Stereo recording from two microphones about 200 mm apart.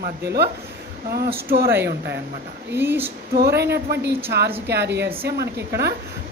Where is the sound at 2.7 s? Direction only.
10° right (ahead or behind).